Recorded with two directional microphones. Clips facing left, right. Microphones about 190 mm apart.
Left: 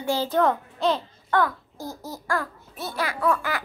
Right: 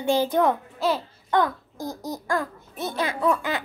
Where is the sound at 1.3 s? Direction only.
15° right (ahead or behind).